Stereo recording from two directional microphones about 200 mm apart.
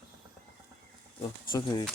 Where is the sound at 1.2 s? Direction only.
20° left (ahead or behind).